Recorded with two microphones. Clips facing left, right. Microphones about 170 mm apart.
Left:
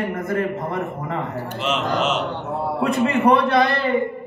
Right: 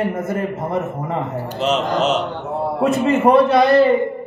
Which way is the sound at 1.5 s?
40° right (ahead or behind).